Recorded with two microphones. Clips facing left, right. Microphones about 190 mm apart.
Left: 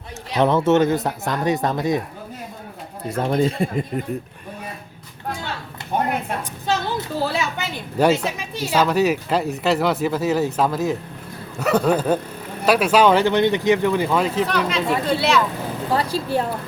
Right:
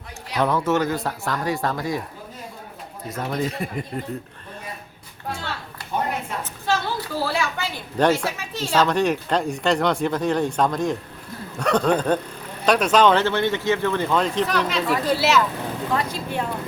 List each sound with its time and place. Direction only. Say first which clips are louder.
0.3 s speech: left 4 dB; 25° left (ahead or behind)
3.1 s speech: left 6 dB; 30° left (ahead or behind)
5.9 s a sound: left 3 dB; 60° left (ahead or behind)
6.7 s a sound: left 1 dB; 20° left (ahead or behind)
8.1 s speech: left 2 dB; 20° left (ahead or behind); by 15.4 s centre (ahead or behind)
15.9 s speech: left 6 dB; 35° left (ahead or behind)